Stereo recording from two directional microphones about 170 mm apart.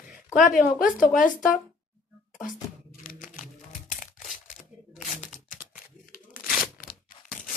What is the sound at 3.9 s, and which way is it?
Tearing, 50° left (ahead or behind).